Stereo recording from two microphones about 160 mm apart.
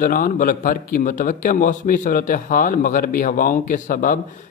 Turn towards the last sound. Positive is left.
turn(degrees=55)  # may be behind; listen again after turning